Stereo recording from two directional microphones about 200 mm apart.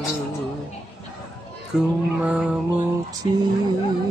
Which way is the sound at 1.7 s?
5° right (ahead or behind).